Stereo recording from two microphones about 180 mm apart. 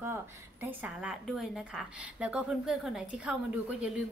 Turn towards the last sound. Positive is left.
turn(degrees=-5)  # may be behind; listen again after turning